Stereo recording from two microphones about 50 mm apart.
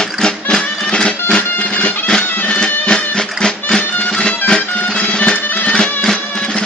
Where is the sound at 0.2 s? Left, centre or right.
Centre.